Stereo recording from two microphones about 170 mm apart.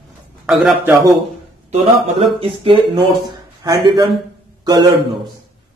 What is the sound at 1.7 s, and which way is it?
A man's voice, 35° right (ahead or behind).